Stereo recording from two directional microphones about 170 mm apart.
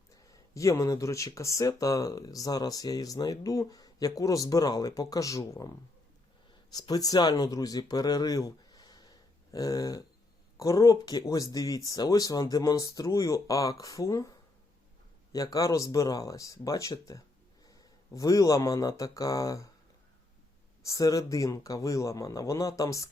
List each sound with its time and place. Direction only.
0.1 s speech: 20° left (ahead or behind)
20.8 s speech: 20° left (ahead or behind)